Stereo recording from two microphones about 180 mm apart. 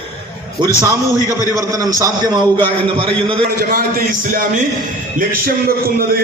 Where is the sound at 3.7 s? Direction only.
50° right (ahead or behind).